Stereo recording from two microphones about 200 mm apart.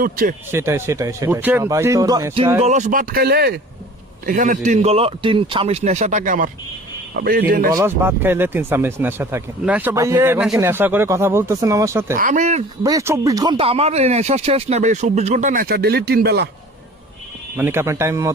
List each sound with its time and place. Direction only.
0.0 s speech: 45° right (ahead or behind)
0.5 s speech: 15° right (ahead or behind)
2.6 s speech: 35° right (ahead or behind); by 3.6 s 55° right (ahead or behind)
4.3 s speech: 40° right (ahead or behind)
7.7 s speech: 15° right (ahead or behind)
12.1 s speech: 40° right (ahead or behind)
12.8 s speech: 15° right (ahead or behind); by 16.5 s 55° right (ahead or behind)
17.6 s speech: 10° right (ahead or behind)